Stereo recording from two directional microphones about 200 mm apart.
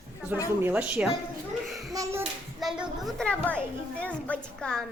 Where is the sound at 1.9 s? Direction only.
15° right (ahead or behind).